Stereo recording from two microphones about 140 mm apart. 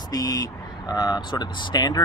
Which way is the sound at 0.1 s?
25° left (ahead or behind).